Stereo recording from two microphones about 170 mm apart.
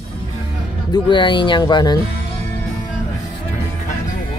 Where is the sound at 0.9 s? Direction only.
25° left (ahead or behind).